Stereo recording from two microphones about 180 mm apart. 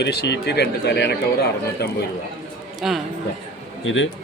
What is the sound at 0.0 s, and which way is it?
A man's voice, 70° left (ahead or behind).